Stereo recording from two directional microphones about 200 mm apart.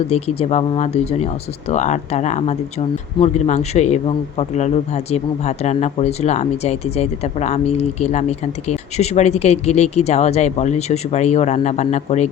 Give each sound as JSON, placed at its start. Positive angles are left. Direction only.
{"t": 0.1, "sound": "speech", "side_deg": 30}